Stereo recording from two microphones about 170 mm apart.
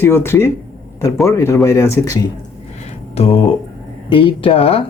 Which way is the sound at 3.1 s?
35° left (ahead or behind).